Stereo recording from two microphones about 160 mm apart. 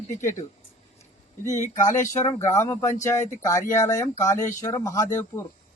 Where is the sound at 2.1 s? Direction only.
20° left (ahead or behind).